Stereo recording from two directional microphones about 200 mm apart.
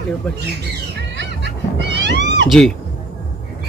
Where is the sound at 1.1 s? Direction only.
60° right (ahead or behind).